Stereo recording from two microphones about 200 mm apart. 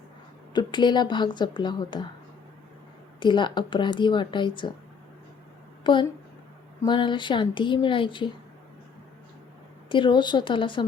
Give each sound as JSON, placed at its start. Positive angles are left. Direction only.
{"t": 0.5, "sound": "speech", "side_deg": 20}
{"t": 3.2, "sound": "speech", "side_deg": 25}
{"t": 5.8, "sound": "a woman's voice", "side_deg": 25}
{"t": 9.9, "sound": "speech", "side_deg": 25}